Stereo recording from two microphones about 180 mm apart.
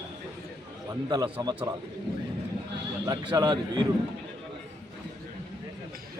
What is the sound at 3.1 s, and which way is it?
Speech, 25° right (ahead or behind).